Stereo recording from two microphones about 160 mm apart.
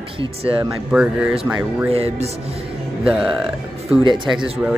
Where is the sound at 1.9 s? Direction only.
40° right (ahead or behind).